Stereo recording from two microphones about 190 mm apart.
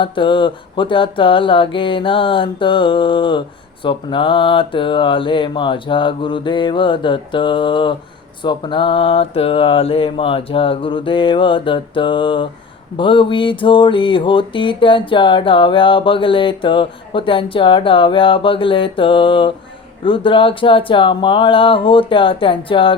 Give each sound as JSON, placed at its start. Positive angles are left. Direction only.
{"t": 0.0, "sound": "mantra", "side_deg": 25}